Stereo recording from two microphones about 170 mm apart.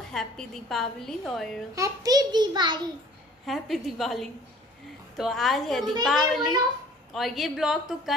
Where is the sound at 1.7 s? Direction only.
20° right (ahead or behind).